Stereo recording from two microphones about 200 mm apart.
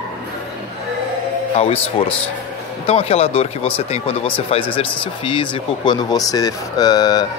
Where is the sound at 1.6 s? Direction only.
30° left (ahead or behind).